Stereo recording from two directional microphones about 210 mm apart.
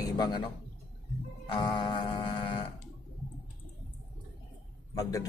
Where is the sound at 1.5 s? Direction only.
20° left (ahead or behind).